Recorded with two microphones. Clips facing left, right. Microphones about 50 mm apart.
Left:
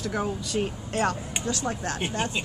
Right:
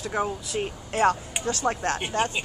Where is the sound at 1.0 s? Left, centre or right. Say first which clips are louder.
Right 7 dB; right.